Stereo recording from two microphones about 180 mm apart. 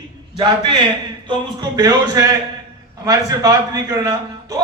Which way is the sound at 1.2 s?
20° right (ahead or behind).